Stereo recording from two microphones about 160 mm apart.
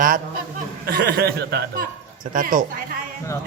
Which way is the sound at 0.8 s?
70° right (ahead or behind).